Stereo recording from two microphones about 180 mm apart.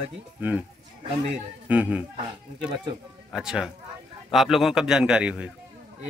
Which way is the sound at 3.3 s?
5° right (ahead or behind).